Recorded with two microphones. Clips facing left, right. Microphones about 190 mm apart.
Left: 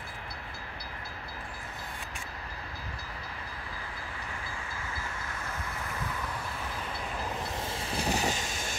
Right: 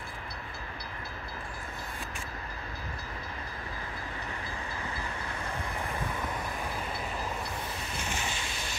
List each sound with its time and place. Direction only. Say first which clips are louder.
7.9 s vehicle: left 9 dB; 35° left (ahead or behind)